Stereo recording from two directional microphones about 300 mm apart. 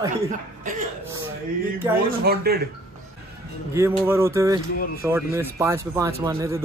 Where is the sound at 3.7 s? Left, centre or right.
Centre.